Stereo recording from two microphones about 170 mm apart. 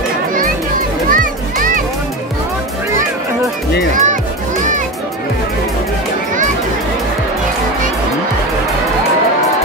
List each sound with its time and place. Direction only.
1.1 s children playing: 55° right (ahead or behind)
3.9 s music: 50° right (ahead or behind)